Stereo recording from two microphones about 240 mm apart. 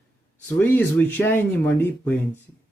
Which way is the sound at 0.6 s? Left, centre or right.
Centre.